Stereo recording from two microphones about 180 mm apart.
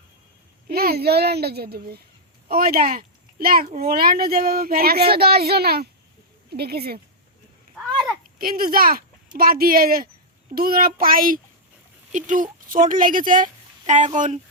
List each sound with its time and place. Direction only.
0.7 s speech: 60° right (ahead or behind)
7.8 s a sound: centre (ahead or behind)
8.4 s a child's voice: 55° right (ahead or behind)